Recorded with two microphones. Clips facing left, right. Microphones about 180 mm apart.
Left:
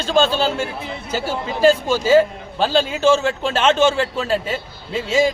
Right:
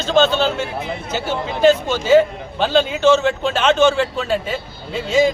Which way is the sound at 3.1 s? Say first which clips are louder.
Right 2 dB; 5° left (ahead or behind).